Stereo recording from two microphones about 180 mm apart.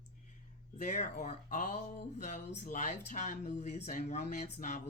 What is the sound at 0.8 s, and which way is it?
Speech, 40° left (ahead or behind).